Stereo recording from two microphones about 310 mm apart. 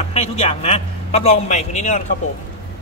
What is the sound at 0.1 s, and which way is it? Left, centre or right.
A man's voice, centre.